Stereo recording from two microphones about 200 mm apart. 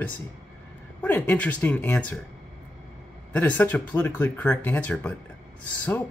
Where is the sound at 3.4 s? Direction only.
10° left (ahead or behind).